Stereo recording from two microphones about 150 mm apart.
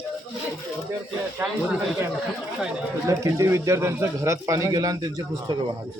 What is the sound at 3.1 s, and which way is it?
Speech, 20° right (ahead or behind).